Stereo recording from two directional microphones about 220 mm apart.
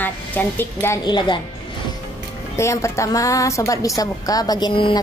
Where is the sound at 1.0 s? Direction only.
20° left (ahead or behind).